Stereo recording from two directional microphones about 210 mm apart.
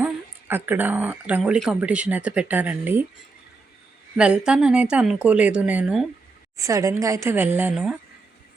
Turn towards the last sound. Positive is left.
turn(degrees=-5)  # may be behind; listen again after turning